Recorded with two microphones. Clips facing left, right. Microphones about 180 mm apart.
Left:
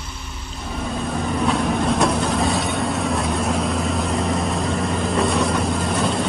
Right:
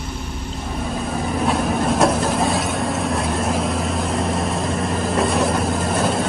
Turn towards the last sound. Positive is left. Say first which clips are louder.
# right 1 dB
turn(degrees=0)  # may be behind; listen again after turning